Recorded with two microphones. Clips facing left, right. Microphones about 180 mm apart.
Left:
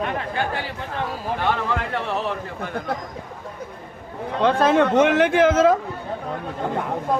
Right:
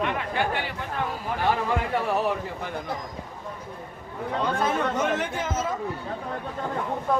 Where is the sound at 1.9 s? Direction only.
10° right (ahead or behind).